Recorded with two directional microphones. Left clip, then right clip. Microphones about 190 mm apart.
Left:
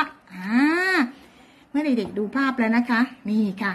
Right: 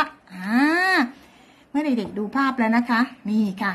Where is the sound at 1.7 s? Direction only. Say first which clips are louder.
Even; 25° right (ahead or behind).